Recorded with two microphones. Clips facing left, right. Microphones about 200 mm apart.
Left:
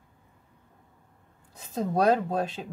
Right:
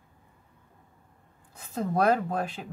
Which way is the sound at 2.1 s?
20° left (ahead or behind).